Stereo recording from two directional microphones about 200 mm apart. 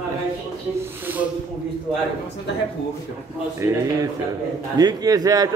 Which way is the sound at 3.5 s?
15° right (ahead or behind).